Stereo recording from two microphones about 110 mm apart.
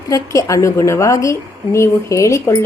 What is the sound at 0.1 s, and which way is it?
Speech, 30° left (ahead or behind).